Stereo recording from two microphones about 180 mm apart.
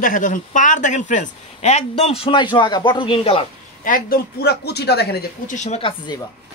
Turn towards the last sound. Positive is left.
turn(degrees=40)  # may be behind; listen again after turning